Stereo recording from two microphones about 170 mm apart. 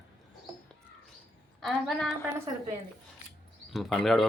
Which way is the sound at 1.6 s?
Centre (ahead or behind).